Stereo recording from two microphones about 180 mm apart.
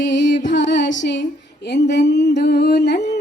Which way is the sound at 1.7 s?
70° left (ahead or behind).